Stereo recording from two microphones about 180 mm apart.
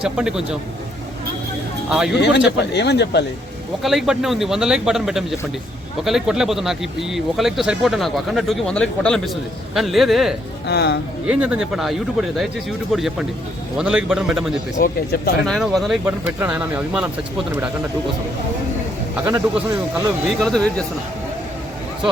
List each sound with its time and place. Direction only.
0.0 s speech: 5° right (ahead or behind)
1.9 s speech: 5° right (ahead or behind)
2.1 s speech: 75° left (ahead or behind)
3.8 s speech: centre (ahead or behind)
10.7 s speech: 65° left (ahead or behind)
11.3 s speech: 5° right (ahead or behind)
14.8 s speech: 60° left (ahead or behind)
15.4 s speech: centre (ahead or behind)
19.1 s speech: 10° right (ahead or behind)
20.4 s speech: 5° left (ahead or behind)